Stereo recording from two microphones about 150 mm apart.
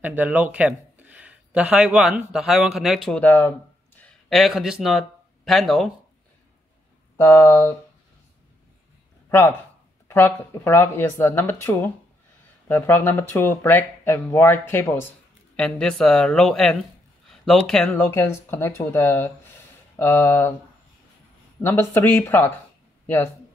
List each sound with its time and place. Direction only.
0.0 s speech: 10° right (ahead or behind)
3.2 s speech: 10° left (ahead or behind)
4.0 s speech: centre (ahead or behind)
7.2 s speech: 20° left (ahead or behind)
10.0 s speech: 15° left (ahead or behind)
15.5 s speech: 5° left (ahead or behind)
18.0 s speech: 15° left (ahead or behind)
21.5 s speech: 15° left (ahead or behind)